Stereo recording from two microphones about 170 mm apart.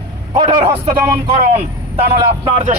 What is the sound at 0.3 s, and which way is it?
Speech, 25° right (ahead or behind).